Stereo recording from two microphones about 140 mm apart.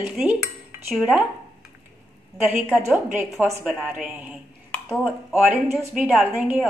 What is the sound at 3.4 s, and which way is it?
Speech, 15° right (ahead or behind).